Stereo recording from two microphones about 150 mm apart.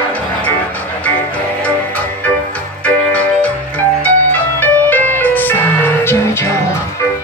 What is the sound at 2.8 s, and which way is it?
Music, 10° left (ahead or behind).